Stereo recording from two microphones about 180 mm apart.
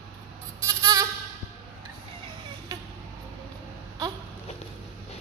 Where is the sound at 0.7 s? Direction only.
20° right (ahead or behind).